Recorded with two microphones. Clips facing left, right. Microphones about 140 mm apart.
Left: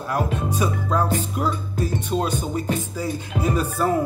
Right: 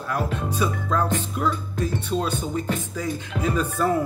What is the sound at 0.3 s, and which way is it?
Speech, 15° left (ahead or behind).